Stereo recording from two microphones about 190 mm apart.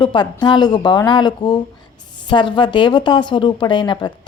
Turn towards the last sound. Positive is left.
turn(degrees=25)  # may be behind; listen again after turning